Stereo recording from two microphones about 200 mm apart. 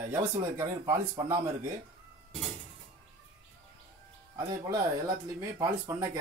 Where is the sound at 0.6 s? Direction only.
15° right (ahead or behind).